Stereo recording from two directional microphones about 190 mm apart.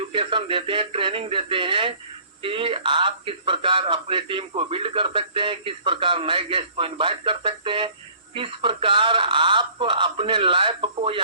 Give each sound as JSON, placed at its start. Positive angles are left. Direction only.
{"t": 0.1, "sound": "speech", "side_deg": -25}